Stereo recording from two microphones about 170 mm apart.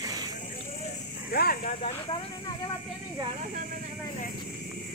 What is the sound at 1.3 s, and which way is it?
Vehicle, 60° left (ahead or behind).